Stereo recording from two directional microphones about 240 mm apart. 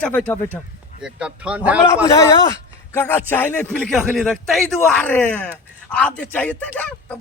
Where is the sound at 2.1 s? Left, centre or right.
Centre.